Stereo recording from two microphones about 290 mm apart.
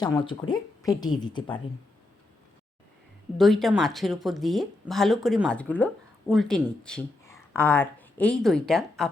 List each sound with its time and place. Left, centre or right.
0.0 s a woman's voice: centre
3.3 s speech: centre